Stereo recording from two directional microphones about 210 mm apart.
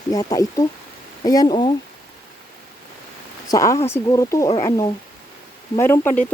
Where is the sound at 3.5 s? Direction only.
15° left (ahead or behind).